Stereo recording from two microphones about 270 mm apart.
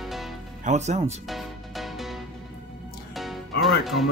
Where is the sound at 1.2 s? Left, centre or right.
Centre.